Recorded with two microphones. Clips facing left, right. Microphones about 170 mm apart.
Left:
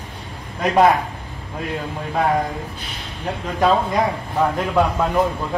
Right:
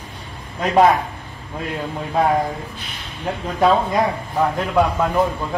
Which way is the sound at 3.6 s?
5° right (ahead or behind).